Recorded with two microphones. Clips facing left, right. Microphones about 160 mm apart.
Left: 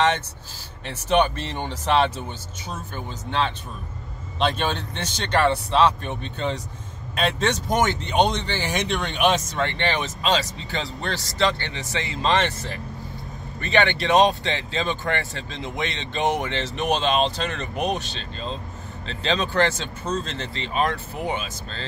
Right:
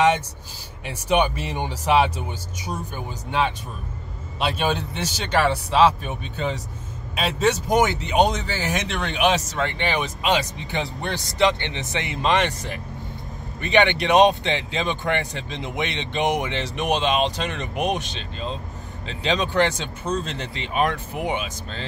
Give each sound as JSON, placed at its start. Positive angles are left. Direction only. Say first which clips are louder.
{"t": 0.8, "sound": "speech", "louder": "even", "side_deg": -10}